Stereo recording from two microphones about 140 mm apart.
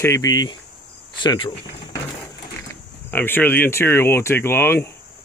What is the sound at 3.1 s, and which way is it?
Speech, 15° left (ahead or behind).